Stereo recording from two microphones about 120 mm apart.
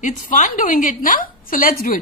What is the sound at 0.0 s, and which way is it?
A woman's voice, 90° left.